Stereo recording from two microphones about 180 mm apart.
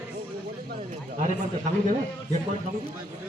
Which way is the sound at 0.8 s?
45° right (ahead or behind).